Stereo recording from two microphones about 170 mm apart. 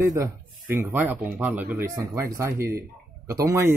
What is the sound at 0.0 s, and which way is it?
Speech, 20° right (ahead or behind).